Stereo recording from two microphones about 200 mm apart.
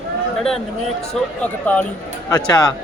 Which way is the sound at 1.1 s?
5° left (ahead or behind).